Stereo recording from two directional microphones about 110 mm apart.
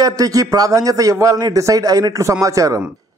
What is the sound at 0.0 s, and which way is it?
A man's voice, 30° right (ahead or behind).